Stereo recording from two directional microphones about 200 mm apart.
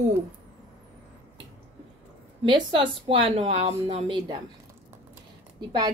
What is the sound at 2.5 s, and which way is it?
Speech, 25° right (ahead or behind).